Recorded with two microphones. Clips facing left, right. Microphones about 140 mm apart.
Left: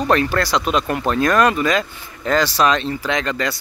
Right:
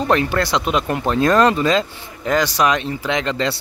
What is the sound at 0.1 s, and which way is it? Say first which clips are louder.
Speech: even; 20° right (ahead or behind).